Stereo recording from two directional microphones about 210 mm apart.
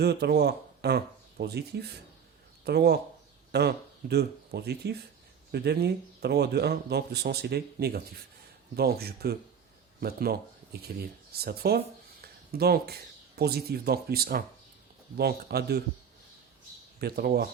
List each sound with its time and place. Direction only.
0.0 s speech: 50° right (ahead or behind)
17.0 s speech: 50° right (ahead or behind)